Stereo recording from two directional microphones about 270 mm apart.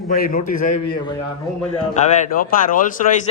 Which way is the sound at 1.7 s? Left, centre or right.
Left.